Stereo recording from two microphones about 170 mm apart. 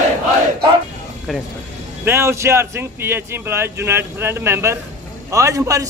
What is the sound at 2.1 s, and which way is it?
A man's voice, 15° right (ahead or behind).